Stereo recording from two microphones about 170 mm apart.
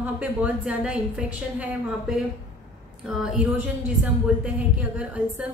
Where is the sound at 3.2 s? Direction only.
5° right (ahead or behind).